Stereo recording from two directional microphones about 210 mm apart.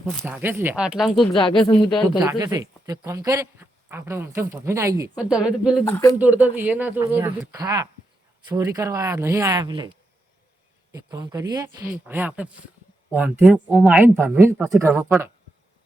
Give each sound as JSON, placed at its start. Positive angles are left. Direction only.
{"t": 0.1, "sound": "speech", "side_deg": 0}
{"t": 0.3, "sound": "speech", "side_deg": -10}
{"t": 1.6, "sound": "speech", "side_deg": 20}
{"t": 2.1, "sound": "speech", "side_deg": -15}
{"t": 5.8, "sound": "speech", "side_deg": 15}
{"t": 6.1, "sound": "speech", "side_deg": -5}
{"t": 10.9, "sound": "speech", "side_deg": -15}